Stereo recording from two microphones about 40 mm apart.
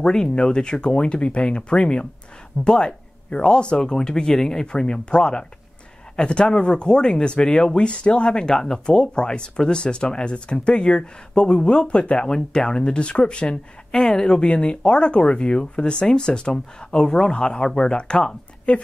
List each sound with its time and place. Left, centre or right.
0.0 s speech: centre